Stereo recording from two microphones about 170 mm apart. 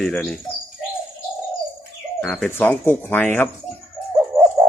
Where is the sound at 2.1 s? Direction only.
10° left (ahead or behind).